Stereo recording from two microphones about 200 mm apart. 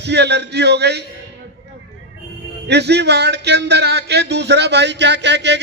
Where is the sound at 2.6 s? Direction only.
55° right (ahead or behind).